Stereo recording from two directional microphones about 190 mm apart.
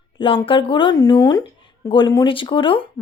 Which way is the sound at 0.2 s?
25° left (ahead or behind).